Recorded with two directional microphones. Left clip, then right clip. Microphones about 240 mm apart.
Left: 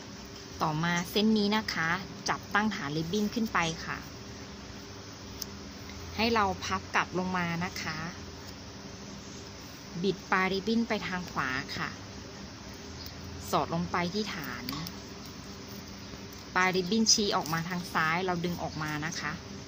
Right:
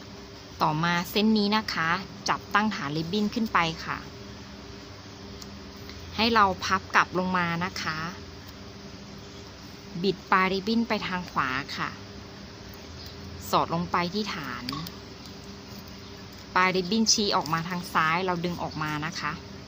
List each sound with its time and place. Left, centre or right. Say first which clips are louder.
0.6 s speech: right 5 dB; centre
6.1 s a woman's voice: right 6 dB; centre
10.0 s speech: right 5 dB; centre
13.5 s speech: right 5 dB; centre
16.5 s speech: right 4 dB; centre